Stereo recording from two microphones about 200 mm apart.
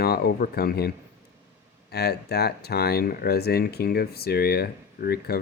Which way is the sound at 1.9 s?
50° left (ahead or behind).